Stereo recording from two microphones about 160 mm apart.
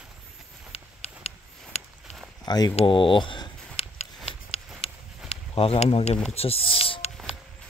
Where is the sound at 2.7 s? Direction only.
35° left (ahead or behind).